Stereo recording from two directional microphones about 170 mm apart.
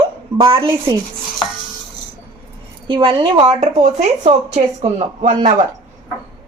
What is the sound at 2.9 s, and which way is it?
Speech, 30° right (ahead or behind).